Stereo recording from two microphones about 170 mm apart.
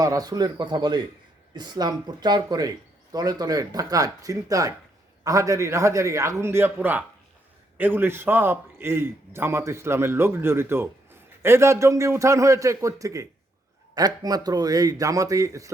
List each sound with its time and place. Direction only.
0.0 s a man's voice: 20° right (ahead or behind)